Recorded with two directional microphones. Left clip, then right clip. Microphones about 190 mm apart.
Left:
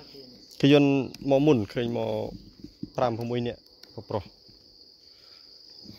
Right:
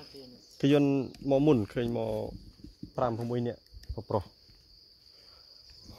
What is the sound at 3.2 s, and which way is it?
Speech, 10° left (ahead or behind).